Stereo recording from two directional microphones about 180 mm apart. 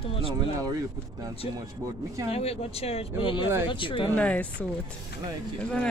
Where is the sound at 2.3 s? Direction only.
35° left (ahead or behind).